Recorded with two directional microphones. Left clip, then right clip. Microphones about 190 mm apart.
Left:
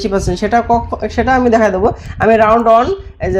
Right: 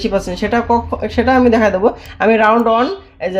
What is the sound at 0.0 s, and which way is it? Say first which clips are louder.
Speech: left 1 dB; 25° left (ahead or behind).